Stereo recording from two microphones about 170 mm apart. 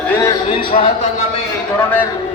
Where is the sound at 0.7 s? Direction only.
40° left (ahead or behind).